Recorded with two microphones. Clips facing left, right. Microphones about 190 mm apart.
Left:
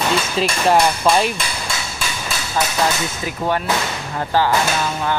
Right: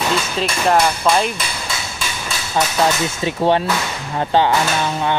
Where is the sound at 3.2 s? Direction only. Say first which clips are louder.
Right 5 dB; 25° right (ahead or behind).